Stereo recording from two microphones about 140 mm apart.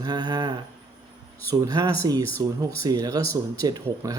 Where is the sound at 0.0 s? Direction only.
30° right (ahead or behind).